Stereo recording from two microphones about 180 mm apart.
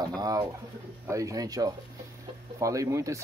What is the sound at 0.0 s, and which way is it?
Speech, 20° right (ahead or behind).